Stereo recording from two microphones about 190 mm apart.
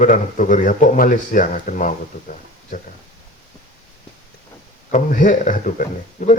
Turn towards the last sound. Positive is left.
turn(degrees=45)  # may be behind; listen again after turning